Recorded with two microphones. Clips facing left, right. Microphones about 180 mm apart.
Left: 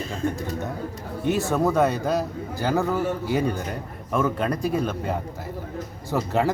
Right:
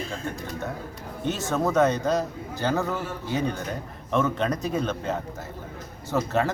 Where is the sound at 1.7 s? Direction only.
10° left (ahead or behind).